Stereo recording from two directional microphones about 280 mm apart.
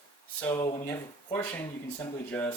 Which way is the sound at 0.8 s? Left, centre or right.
Centre.